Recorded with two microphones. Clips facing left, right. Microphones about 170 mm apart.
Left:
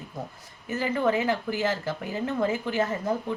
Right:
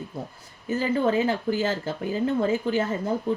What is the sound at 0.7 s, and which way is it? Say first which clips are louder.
Speech: right 2 dB; 30° right (ahead or behind).